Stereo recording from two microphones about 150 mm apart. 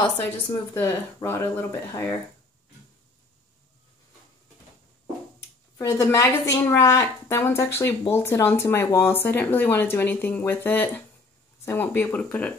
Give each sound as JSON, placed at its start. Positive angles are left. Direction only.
{"t": 0.2, "sound": "speech", "side_deg": 15}
{"t": 5.8, "sound": "a woman's voice", "side_deg": 20}